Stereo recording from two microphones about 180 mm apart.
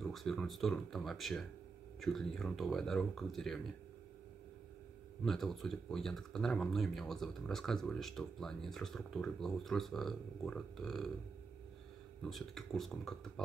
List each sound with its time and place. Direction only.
0.0 s speech: centre (ahead or behind)
5.2 s speech: centre (ahead or behind)
12.2 s speech: centre (ahead or behind)